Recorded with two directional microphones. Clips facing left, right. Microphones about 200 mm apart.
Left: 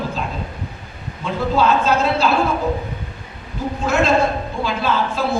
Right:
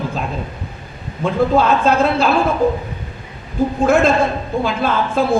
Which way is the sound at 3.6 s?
55° right (ahead or behind).